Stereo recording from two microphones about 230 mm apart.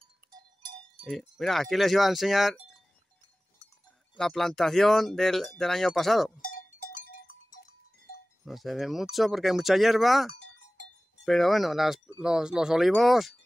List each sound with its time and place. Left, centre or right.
1.0 s speech: centre
4.2 s speech: centre
6.4 s a sound: left
8.5 s speech: centre